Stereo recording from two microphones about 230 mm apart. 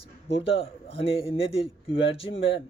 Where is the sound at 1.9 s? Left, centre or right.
Left.